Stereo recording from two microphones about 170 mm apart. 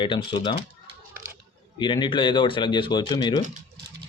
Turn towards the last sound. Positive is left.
turn(degrees=25)  # may be behind; listen again after turning